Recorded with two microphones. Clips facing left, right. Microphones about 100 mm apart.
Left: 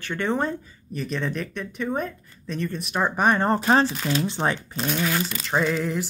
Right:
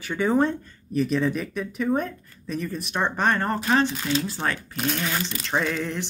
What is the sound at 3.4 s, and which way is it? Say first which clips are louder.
Speech: left 3 dB; 30° left (ahead or behind).